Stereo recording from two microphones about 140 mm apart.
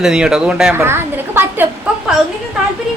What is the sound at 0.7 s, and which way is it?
Speech, 15° right (ahead or behind).